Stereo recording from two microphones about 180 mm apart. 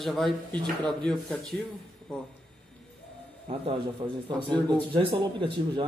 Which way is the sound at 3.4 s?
30° right (ahead or behind).